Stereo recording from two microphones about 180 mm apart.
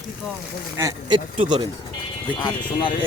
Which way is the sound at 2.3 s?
25° left (ahead or behind).